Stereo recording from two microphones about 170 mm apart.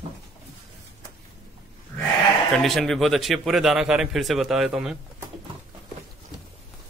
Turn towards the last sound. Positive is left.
turn(degrees=-5)  # may be behind; listen again after turning